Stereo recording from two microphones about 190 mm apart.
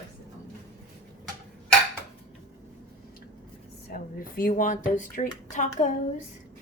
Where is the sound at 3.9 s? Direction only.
50° left (ahead or behind).